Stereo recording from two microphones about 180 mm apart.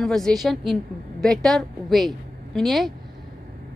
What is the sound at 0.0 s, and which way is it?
A woman's voice, centre (ahead or behind).